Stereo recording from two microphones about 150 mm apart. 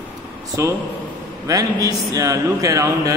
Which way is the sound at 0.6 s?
20° right (ahead or behind).